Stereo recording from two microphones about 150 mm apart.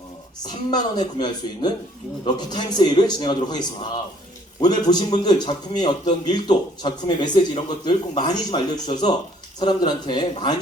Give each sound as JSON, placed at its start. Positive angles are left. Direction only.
{"t": 0.4, "sound": "speech", "side_deg": 30}